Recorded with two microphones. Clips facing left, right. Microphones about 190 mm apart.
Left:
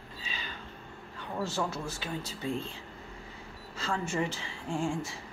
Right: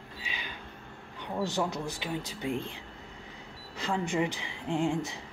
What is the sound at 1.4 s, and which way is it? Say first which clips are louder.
Speech: right 2 dB; 15° right (ahead or behind).